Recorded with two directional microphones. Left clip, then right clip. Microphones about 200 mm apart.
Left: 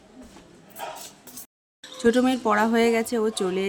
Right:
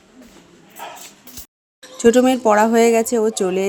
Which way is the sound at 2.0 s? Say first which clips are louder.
Right 8 dB; 10° right (ahead or behind).